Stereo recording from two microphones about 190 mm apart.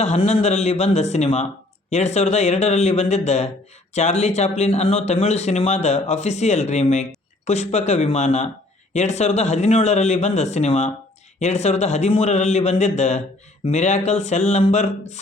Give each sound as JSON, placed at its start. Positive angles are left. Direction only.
{"t": 0.0, "sound": "speech", "side_deg": 35}